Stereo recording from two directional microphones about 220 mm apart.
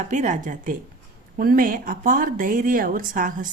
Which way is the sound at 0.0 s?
35° right (ahead or behind).